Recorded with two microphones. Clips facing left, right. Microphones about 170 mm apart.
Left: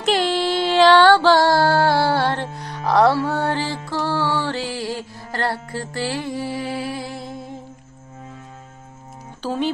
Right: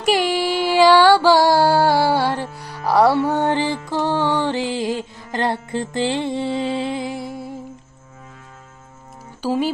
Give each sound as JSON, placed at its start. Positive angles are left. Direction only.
{"t": 0.0, "sound": "music", "side_deg": -10}
{"t": 9.4, "sound": "speech", "side_deg": -10}